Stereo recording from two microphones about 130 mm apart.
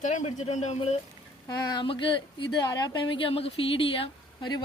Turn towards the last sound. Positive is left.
turn(degrees=40)  # may be behind; listen again after turning